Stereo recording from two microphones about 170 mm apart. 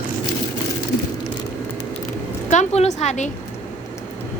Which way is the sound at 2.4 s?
40° left (ahead or behind).